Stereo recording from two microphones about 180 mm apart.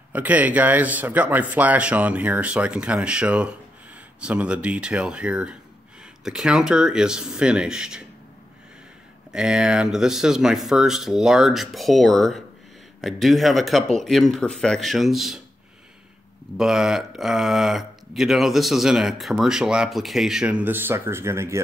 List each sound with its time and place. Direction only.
0.1 s speech: 10° right (ahead or behind)
9.3 s speech: 5° right (ahead or behind)
16.5 s speech: centre (ahead or behind)